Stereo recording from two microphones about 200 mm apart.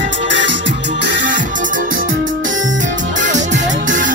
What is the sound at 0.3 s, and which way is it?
Music, 65° right (ahead or behind).